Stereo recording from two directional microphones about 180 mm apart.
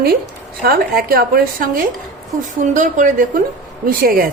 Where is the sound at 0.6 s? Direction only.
55° right (ahead or behind).